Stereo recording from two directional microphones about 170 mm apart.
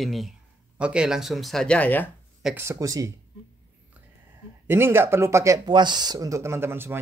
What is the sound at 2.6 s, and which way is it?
Speech, 15° right (ahead or behind).